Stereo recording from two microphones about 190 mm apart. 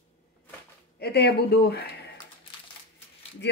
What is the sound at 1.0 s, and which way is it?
Speech, 60° left (ahead or behind).